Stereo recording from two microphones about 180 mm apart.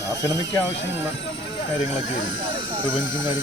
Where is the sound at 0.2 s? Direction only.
20° left (ahead or behind).